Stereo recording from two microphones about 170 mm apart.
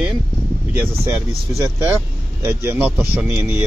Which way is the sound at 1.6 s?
15° right (ahead or behind).